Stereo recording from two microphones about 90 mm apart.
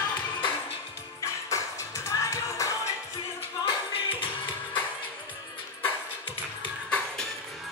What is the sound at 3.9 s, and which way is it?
Music, 75° left (ahead or behind).